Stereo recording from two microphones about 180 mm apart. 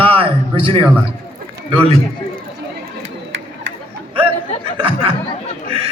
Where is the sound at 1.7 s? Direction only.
30° right (ahead or behind).